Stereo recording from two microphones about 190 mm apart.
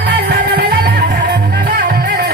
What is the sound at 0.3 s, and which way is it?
Music, 55° right (ahead or behind).